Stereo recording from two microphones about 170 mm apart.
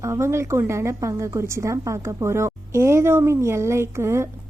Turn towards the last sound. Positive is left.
turn(degrees=-15)  # may be behind; listen again after turning